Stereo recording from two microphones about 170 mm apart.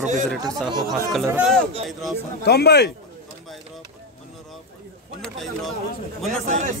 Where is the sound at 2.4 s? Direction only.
70° left (ahead or behind).